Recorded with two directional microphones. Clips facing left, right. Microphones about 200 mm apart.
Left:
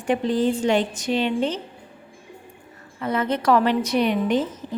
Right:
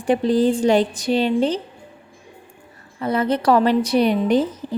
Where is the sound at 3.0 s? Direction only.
35° right (ahead or behind).